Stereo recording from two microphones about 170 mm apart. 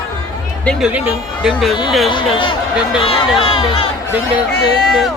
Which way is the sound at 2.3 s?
30° left (ahead or behind).